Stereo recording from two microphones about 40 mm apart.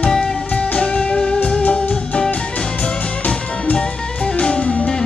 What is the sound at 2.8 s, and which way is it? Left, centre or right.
Music, left.